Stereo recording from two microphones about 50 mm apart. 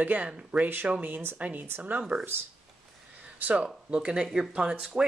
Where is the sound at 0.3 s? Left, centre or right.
Right.